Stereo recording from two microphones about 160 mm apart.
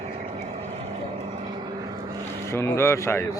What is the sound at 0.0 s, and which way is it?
Vehicle, 45° right (ahead or behind).